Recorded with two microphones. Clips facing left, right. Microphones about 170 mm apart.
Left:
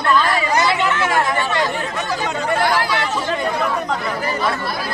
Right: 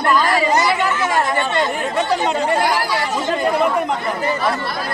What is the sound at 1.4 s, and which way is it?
Speech, 25° right (ahead or behind).